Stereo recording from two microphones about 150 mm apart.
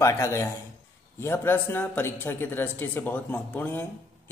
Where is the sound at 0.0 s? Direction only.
20° left (ahead or behind).